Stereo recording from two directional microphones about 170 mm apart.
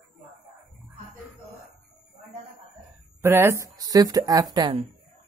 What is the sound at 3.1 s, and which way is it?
Speech, 15° right (ahead or behind).